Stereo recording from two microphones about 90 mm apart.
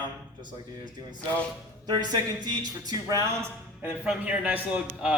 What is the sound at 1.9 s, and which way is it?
Speech, 45° right (ahead or behind).